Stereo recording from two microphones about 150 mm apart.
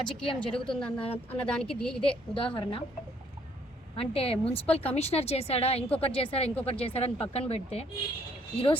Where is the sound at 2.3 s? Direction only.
35° left (ahead or behind).